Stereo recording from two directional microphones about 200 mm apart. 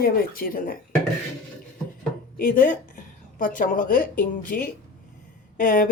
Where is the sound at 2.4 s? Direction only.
45° left (ahead or behind).